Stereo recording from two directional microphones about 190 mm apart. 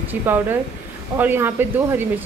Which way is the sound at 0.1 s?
10° right (ahead or behind).